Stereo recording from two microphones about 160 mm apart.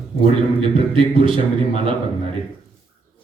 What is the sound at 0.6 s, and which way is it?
A man's voice, 35° right (ahead or behind).